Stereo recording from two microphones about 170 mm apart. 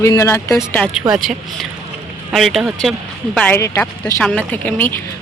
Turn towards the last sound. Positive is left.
turn(degrees=10)  # may be behind; listen again after turning